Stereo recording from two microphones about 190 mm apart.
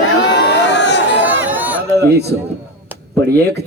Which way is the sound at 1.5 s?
10° right (ahead or behind).